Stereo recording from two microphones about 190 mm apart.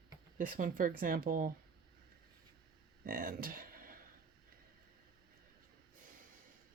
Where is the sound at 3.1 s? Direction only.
50° right (ahead or behind).